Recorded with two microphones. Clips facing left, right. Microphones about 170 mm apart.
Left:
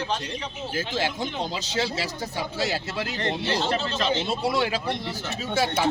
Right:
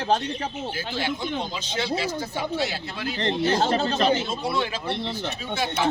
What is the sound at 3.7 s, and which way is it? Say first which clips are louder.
Speech: right 4 dB; 45° right (ahead or behind).